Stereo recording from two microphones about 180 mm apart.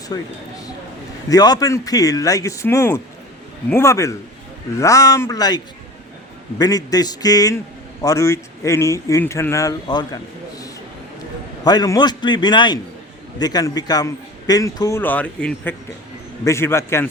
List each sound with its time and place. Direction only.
0.1 s a man's voice: 20° left (ahead or behind)
1.3 s a man's voice: 20° left (ahead or behind)
11.6 s a man's voice: 20° left (ahead or behind)